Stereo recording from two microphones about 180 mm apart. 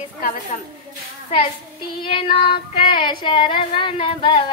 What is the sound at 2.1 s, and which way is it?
Speech, 30° left (ahead or behind).